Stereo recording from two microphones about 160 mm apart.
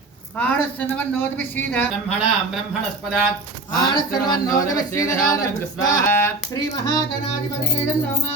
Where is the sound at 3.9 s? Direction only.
25° left (ahead or behind).